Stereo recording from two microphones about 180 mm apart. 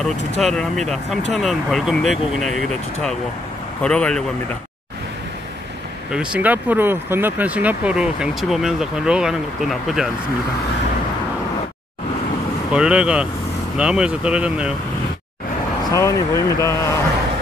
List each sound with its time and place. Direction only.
0.4 s speech: centre (ahead or behind)
6.1 s speech: 5° right (ahead or behind)
12.7 s speech: 5° right (ahead or behind)
15.9 s speech: 15° left (ahead or behind)